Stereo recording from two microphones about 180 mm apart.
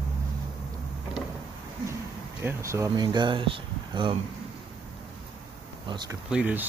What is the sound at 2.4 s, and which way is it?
Speech, 15° right (ahead or behind).